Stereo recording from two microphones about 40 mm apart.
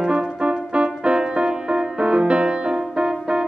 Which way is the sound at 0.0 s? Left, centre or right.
Right.